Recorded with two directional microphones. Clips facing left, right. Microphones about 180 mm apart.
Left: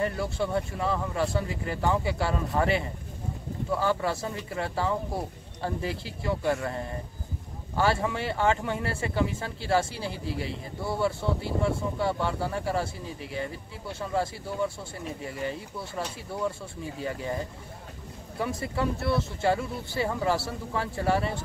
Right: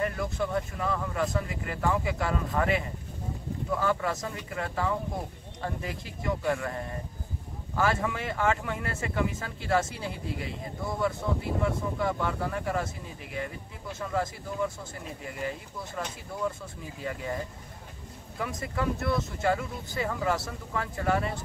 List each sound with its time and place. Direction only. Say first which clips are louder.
0.0 s speech: left 1 dB; 30° left (ahead or behind)
3.8 s speech: left 2 dB; 30° left (ahead or behind)
18.4 s speech: left 2 dB; 30° left (ahead or behind)